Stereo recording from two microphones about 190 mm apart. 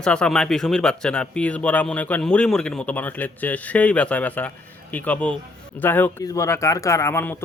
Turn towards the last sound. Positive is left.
turn(degrees=15)  # may be behind; listen again after turning